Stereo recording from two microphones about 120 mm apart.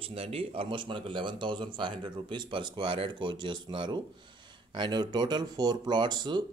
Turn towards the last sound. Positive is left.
turn(degrees=-35)  # may be behind; listen again after turning